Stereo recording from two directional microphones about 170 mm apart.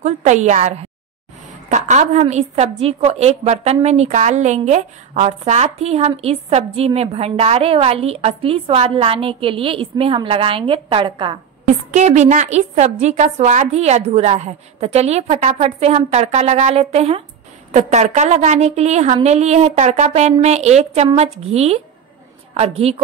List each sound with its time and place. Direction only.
0.0 s a woman's voice: 45° right (ahead or behind); by 11.3 s 30° right (ahead or behind)
11.6 s a woman's voice: 45° right (ahead or behind)